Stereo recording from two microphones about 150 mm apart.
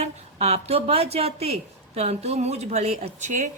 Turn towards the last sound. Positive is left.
turn(degrees=-50)  # may be behind; listen again after turning